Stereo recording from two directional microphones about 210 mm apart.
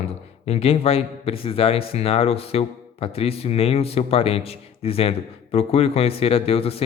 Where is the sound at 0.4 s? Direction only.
30° left (ahead or behind).